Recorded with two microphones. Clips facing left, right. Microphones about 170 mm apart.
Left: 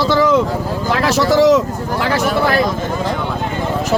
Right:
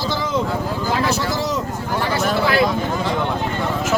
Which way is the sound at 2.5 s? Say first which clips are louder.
Even; 45° left (ahead or behind).